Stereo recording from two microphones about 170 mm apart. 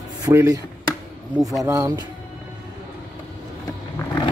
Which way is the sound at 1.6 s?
20° right (ahead or behind).